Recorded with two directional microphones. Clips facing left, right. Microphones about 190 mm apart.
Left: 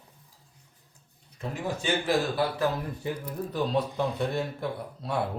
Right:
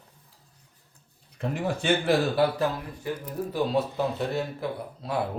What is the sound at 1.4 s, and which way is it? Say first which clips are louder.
Speech: right 3 dB; 60° right (ahead or behind).